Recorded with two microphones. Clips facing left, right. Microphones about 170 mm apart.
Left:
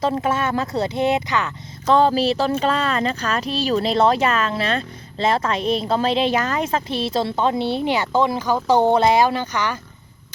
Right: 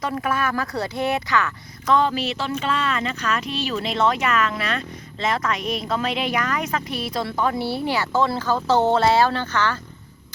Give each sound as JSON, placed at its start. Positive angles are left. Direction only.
{"t": 0.0, "sound": "speech", "side_deg": 25}
{"t": 1.9, "sound": "speech", "side_deg": 35}